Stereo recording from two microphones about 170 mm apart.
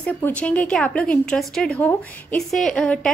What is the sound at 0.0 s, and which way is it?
A woman's voice, 5° left (ahead or behind).